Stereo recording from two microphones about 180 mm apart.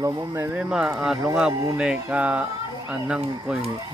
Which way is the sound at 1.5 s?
20° right (ahead or behind).